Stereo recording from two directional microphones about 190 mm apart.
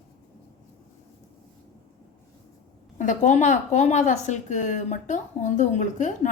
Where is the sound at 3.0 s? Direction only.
40° left (ahead or behind).